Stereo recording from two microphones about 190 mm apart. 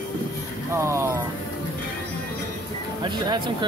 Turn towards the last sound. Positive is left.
turn(degrees=-25)  # may be behind; listen again after turning